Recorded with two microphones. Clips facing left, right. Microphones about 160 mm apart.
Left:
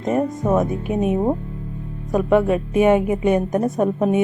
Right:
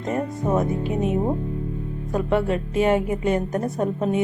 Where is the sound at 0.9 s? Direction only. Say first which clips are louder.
Left 3 dB; 20° left (ahead or behind).